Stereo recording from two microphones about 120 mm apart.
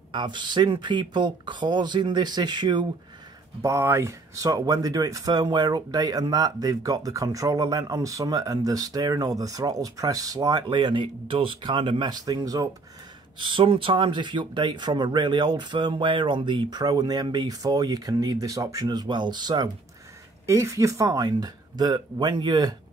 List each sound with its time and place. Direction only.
0.1 s speech: 40° right (ahead or behind)
3.6 s speech: 20° right (ahead or behind)
13.4 s speech: 45° right (ahead or behind)
20.4 s speech: 25° right (ahead or behind)